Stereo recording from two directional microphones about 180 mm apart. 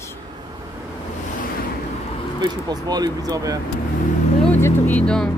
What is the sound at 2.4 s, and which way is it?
Speech, 25° right (ahead or behind).